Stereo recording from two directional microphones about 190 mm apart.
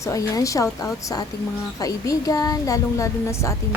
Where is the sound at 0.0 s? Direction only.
15° left (ahead or behind).